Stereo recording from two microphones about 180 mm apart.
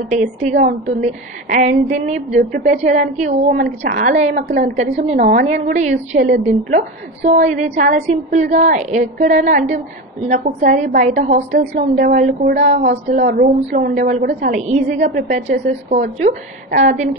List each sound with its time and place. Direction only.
0.4 s a woman's voice: 40° right (ahead or behind)
5.2 s a woman's voice: 60° right (ahead or behind)
5.5 s a woman's voice: 40° right (ahead or behind)